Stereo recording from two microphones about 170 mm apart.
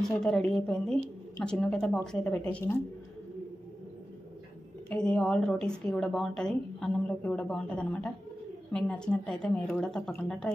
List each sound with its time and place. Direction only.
0.2 s speech: 5° left (ahead or behind)
4.8 s speech: 5° left (ahead or behind)